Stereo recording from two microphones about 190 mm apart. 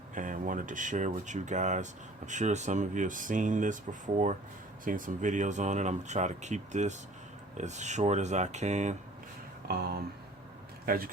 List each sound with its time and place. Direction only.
0.1 s speech: 45° right (ahead or behind)
9.6 s a sound: 55° right (ahead or behind)
10.8 s speech: 50° right (ahead or behind)